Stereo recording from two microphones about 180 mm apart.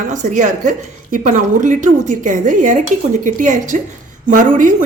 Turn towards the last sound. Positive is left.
turn(degrees=-45)  # may be behind; listen again after turning